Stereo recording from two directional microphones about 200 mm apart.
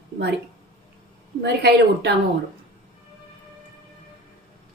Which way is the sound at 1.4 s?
55° right (ahead or behind).